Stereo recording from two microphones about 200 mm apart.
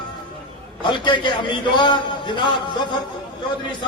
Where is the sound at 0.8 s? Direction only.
25° left (ahead or behind).